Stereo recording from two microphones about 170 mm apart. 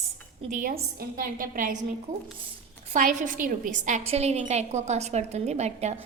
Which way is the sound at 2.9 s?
50° right (ahead or behind).